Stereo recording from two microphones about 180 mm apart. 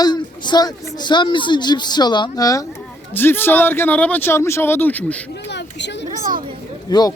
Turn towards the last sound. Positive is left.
turn(degrees=20)  # may be behind; listen again after turning